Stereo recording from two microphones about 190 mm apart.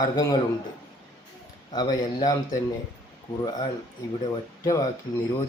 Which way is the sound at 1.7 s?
20° left (ahead or behind).